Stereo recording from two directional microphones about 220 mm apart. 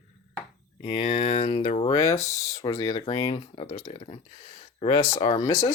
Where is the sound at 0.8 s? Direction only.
30° left (ahead or behind).